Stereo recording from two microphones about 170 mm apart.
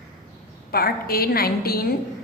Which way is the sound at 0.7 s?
60° left (ahead or behind).